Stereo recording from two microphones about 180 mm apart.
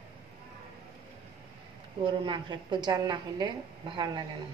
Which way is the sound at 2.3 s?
25° right (ahead or behind).